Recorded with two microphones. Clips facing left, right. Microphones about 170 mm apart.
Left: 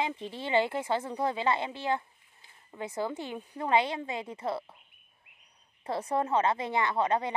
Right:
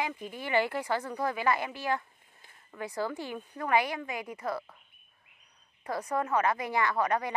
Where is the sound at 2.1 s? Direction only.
45° right (ahead or behind).